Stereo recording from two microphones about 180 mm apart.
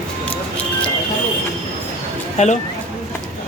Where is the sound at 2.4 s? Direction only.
40° left (ahead or behind).